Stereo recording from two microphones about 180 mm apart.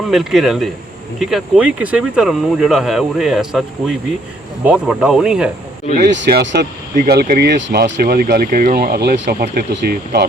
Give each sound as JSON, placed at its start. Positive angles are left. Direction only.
{"t": 0.1, "sound": "speech", "side_deg": 0}
{"t": 6.0, "sound": "speech", "side_deg": -65}